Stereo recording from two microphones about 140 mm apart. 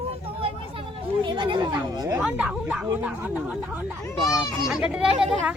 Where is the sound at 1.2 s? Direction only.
35° right (ahead or behind).